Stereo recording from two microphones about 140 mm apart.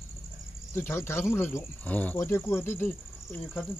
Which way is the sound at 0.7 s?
15° left (ahead or behind).